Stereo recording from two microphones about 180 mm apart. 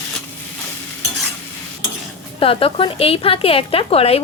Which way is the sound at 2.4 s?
30° left (ahead or behind).